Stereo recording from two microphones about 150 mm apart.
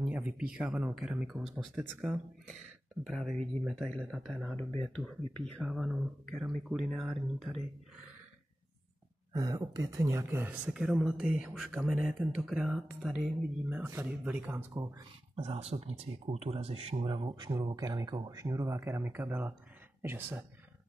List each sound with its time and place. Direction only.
0.0 s speech: 10° right (ahead or behind); by 5.1 s 10° left (ahead or behind)
5.6 s speech: centre (ahead or behind)
9.3 s speech: 25° right (ahead or behind)
14.8 s speech: 25° right (ahead or behind)
15.3 s speech: 40° right (ahead or behind); by 20.4 s 15° right (ahead or behind)